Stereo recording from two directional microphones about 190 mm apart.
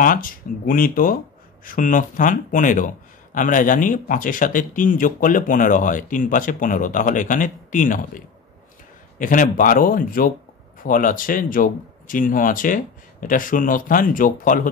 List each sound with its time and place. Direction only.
0.0 s speech: 45° left (ahead or behind)
9.2 s speech: 45° left (ahead or behind)